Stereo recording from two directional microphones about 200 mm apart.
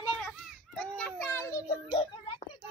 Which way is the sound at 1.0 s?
10° left (ahead or behind).